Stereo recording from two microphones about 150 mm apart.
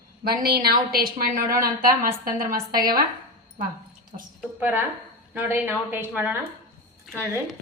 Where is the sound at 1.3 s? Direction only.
65° right (ahead or behind).